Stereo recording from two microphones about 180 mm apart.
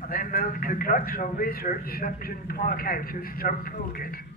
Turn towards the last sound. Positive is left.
turn(degrees=55)  # may be behind; listen again after turning